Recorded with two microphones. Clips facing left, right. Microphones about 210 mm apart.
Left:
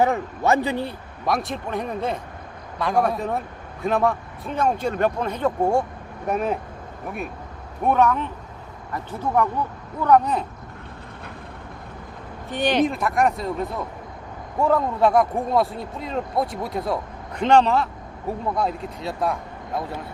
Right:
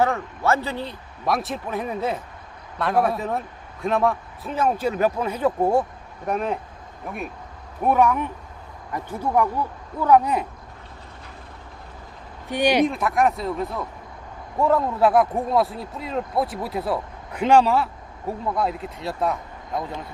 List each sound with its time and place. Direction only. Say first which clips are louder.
0.0 s a man's voice: left 1 dB; 15° left (ahead or behind)
1.2 s speech: even; centre (ahead or behind)
7.9 s speech: even; 10° right (ahead or behind)
12.5 s speech: right 2 dB; 10° right (ahead or behind)
12.8 s speech: even; centre (ahead or behind)